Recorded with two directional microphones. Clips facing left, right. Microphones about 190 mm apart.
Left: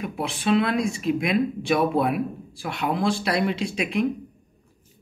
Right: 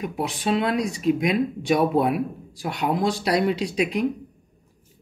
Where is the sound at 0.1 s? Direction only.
40° right (ahead or behind).